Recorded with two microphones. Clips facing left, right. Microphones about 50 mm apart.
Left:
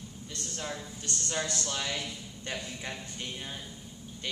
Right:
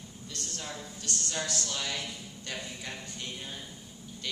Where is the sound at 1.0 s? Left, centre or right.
Left.